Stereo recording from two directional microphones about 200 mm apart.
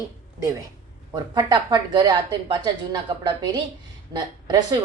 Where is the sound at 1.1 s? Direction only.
20° right (ahead or behind).